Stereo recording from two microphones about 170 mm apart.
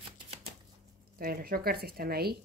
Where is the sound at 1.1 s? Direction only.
60° right (ahead or behind).